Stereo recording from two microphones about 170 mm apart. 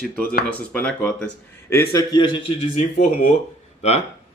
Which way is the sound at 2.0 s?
25° left (ahead or behind).